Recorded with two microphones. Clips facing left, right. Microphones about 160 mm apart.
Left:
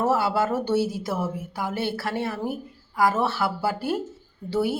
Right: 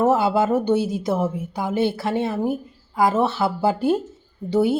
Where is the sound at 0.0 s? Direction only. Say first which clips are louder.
Right 4 dB; 20° right (ahead or behind).